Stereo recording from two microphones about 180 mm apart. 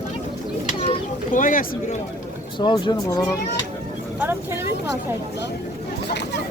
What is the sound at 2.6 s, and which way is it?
Speech, 25° left (ahead or behind).